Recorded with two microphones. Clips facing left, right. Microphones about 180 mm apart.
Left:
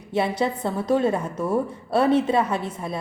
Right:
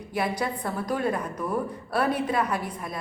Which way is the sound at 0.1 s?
25° left (ahead or behind).